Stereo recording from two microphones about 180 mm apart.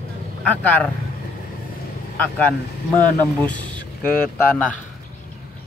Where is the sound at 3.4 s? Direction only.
10° left (ahead or behind).